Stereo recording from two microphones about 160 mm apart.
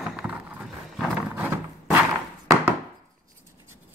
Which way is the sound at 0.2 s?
Centre (ahead or behind).